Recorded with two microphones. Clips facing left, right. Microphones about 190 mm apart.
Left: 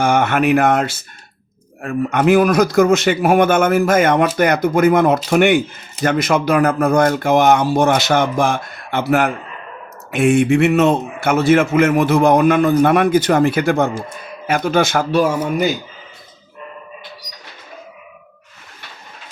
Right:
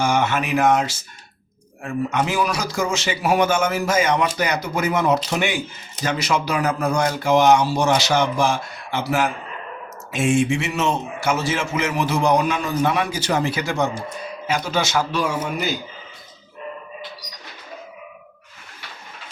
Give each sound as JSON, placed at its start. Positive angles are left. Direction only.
{"t": 0.0, "sound": "speech", "side_deg": 55}